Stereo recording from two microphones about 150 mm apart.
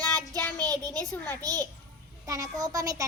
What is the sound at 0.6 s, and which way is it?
Speech, 25° right (ahead or behind).